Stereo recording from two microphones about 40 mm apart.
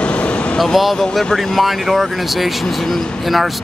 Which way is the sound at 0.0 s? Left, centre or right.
Left.